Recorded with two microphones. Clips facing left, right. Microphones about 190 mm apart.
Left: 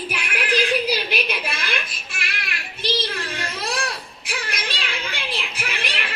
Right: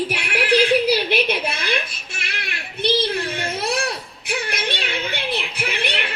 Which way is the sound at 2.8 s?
60° right (ahead or behind).